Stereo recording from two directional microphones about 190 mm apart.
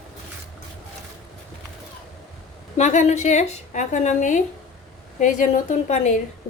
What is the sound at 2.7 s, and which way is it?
A woman's voice, 40° left (ahead or behind).